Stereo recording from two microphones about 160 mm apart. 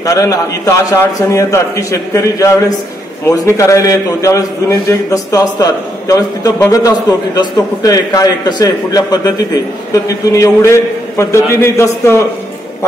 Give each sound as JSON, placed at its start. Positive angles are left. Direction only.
{"t": 0.0, "sound": "a man's voice", "side_deg": 20}